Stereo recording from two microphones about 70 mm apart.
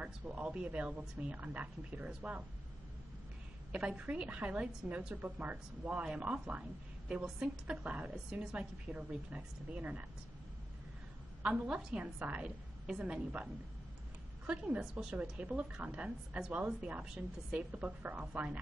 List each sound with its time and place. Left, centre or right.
0.0 s speech: centre
3.7 s speech: centre
11.4 s speech: centre
17.6 s speech: right